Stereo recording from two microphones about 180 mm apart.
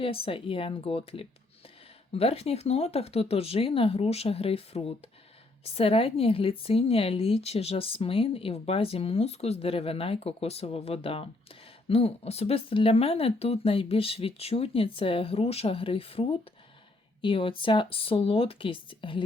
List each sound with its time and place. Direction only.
0.0 s a woman's voice: 30° left (ahead or behind)